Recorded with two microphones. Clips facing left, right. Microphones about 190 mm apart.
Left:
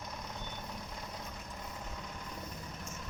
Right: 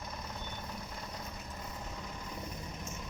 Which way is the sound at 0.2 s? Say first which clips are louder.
Right 1 dB; centre (ahead or behind).